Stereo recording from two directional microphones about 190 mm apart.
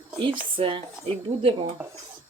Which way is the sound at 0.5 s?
30° right (ahead or behind).